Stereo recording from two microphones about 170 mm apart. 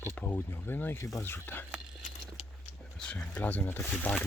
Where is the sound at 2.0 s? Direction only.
45° left (ahead or behind).